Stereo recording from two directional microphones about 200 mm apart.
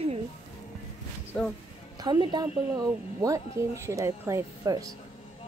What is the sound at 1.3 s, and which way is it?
Speech, 5° left (ahead or behind).